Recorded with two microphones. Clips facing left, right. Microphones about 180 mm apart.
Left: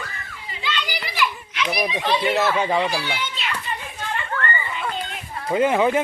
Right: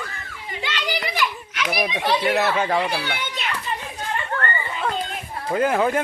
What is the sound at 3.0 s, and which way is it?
Speech, 60° right (ahead or behind).